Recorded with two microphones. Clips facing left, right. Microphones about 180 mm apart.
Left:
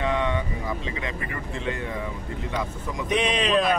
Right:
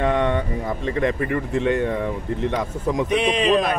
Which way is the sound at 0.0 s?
55° right (ahead or behind).